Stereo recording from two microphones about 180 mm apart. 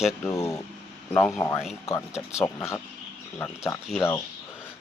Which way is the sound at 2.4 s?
15° left (ahead or behind).